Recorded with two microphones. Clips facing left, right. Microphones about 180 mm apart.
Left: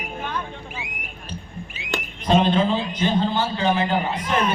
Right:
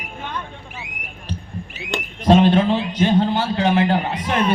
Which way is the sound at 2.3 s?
65° right (ahead or behind).